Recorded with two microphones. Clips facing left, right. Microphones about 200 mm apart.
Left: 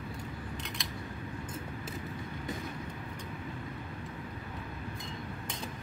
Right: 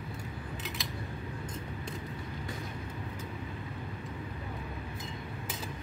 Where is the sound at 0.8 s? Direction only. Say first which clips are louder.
Right 1 dB; centre (ahead or behind).